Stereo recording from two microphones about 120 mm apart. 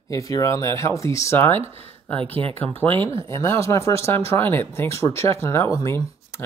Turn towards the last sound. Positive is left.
turn(degrees=25)  # may be behind; listen again after turning